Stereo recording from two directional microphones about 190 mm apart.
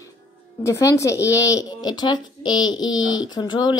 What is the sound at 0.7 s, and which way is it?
A woman's voice, 15° left (ahead or behind).